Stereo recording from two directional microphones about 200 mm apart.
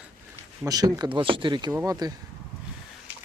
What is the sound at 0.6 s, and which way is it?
Speech, 20° right (ahead or behind).